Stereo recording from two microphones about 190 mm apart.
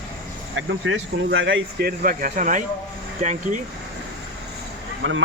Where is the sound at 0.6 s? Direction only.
85° right; by 3.5 s 40° right (ahead or behind).